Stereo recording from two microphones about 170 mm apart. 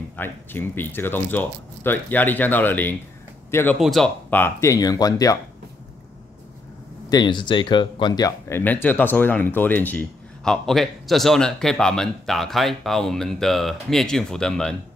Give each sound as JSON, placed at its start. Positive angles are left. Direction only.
{"t": 0.1, "sound": "speech", "side_deg": 10}
{"t": 4.3, "sound": "speech", "side_deg": 10}
{"t": 7.1, "sound": "speech", "side_deg": 25}